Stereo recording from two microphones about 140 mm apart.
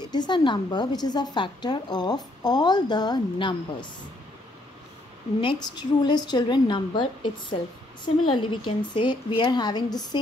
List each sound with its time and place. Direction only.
0.1 s a woman's voice: 30° left (ahead or behind)
5.4 s a woman's voice: 30° left (ahead or behind)